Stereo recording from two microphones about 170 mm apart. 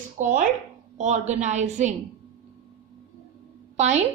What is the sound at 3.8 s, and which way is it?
Speech, 40° right (ahead or behind).